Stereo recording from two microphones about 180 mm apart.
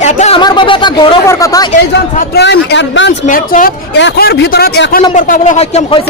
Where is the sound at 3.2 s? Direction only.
50° left (ahead or behind).